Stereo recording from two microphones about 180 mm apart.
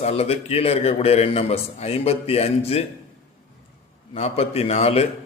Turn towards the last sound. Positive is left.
turn(degrees=35)  # may be behind; listen again after turning